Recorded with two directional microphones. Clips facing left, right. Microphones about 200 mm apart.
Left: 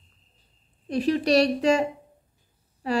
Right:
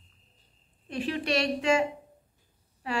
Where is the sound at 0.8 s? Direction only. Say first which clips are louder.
Left 8 dB; 40° left (ahead or behind).